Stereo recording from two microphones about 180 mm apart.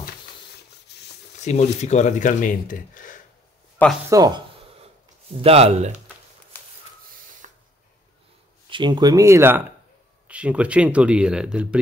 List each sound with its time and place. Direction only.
0.9 s a sound: 70° left (ahead or behind)
1.4 s speech: 40° left (ahead or behind)
3.8 s speech: 10° left (ahead or behind)
5.3 s speech: 35° right (ahead or behind)
7.1 s snort: 50° right (ahead or behind)
8.6 s speech: 25° right (ahead or behind); by 11.8 s 5° right (ahead or behind)